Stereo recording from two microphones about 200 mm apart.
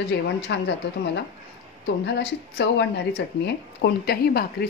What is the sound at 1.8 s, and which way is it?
A woman's voice, 60° left (ahead or behind).